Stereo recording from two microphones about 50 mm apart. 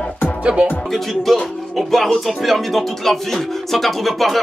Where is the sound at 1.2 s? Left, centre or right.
Centre.